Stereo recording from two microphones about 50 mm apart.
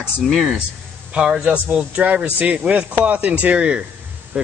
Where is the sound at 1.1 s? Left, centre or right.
Centre.